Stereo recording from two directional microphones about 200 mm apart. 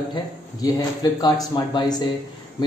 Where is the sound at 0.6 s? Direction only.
20° left (ahead or behind).